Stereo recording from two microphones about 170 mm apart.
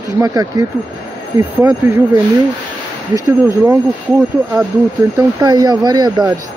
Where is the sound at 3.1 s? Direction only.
15° right (ahead or behind).